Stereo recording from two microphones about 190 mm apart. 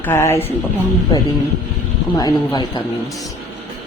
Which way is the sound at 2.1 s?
20° left (ahead or behind).